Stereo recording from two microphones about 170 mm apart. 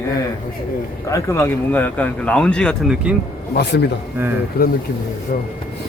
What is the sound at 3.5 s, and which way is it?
Speech, 75° left (ahead or behind).